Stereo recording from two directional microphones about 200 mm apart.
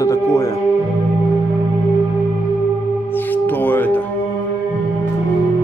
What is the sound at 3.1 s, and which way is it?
Music, 10° left (ahead or behind).